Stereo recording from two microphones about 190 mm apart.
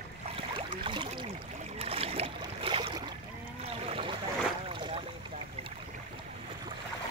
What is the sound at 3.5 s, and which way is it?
Boat, 30° right (ahead or behind).